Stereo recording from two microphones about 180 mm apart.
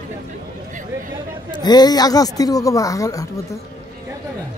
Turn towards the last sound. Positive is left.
turn(degrees=20)  # may be behind; listen again after turning